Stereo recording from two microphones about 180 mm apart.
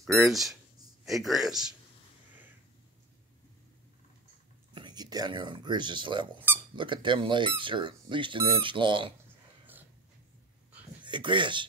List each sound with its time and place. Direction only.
0.3 s a man's voice: centre (ahead or behind)
4.7 s speech: 25° right (ahead or behind)
11.0 s speech: 25° right (ahead or behind)